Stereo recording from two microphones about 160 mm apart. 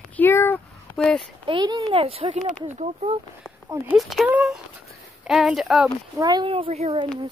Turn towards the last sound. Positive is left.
turn(degrees=-40)  # may be behind; listen again after turning